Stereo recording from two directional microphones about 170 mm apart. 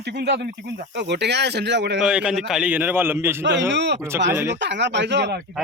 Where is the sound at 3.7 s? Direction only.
90° right.